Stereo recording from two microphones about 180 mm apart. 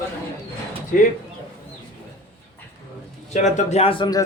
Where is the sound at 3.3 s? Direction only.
40° left (ahead or behind); by 4.2 s 25° left (ahead or behind).